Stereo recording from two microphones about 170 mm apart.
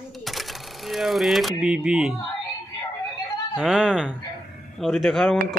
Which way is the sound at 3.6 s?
5° right (ahead or behind).